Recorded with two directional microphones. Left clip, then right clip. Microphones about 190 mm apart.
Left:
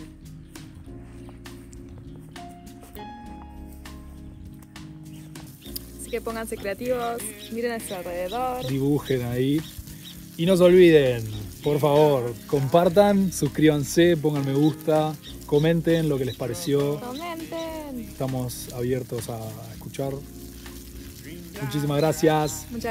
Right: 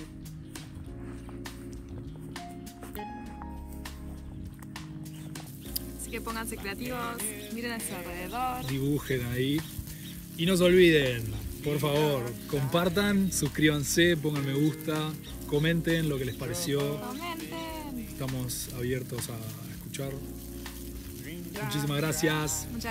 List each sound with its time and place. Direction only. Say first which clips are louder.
6.3 s speech: left 6 dB; 15° right (ahead or behind)
8.1 s music: left 6 dB; 20° right (ahead or behind)
8.6 s speech: left 7 dB; centre (ahead or behind)
17.0 s music: left 4 dB; 15° right (ahead or behind)
17.9 s speech: left 7 dB; centre (ahead or behind)
21.3 s music: left 2 dB; centre (ahead or behind)